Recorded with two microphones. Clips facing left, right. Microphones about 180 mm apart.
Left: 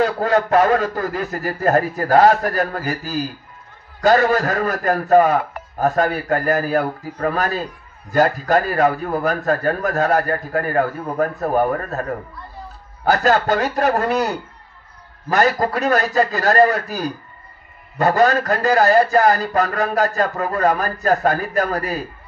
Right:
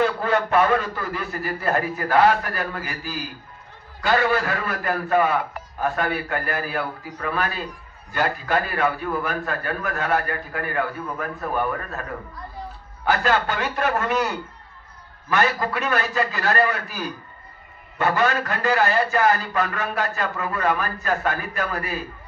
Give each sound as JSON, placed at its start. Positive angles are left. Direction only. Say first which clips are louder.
{"t": 0.0, "sound": "a man's voice", "louder": "left 4 dB", "side_deg": 40}